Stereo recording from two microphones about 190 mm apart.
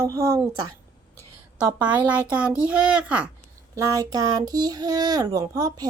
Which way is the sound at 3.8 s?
20° right (ahead or behind).